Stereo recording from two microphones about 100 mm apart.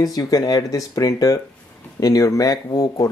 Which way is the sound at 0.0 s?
40° left (ahead or behind).